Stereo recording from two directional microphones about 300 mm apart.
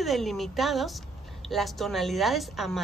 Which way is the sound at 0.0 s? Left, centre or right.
Centre.